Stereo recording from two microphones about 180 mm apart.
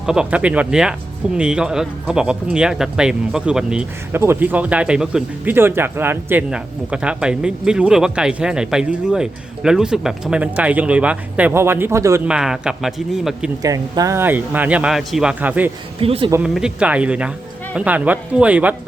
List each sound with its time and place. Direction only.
0.0 s speech: 5° right (ahead or behind)
12.3 s speech: 5° right (ahead or behind)
13.6 s speech: 20° right (ahead or behind)
16.0 s speech: 30° right (ahead or behind)
16.4 s speech: 5° right (ahead or behind)